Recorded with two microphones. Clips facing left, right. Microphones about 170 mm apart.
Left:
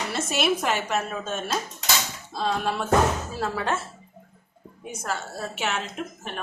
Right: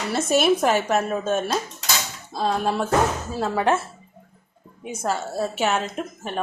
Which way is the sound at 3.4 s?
20° right (ahead or behind).